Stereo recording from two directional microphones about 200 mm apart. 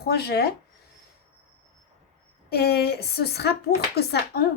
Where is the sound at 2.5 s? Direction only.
50° left (ahead or behind).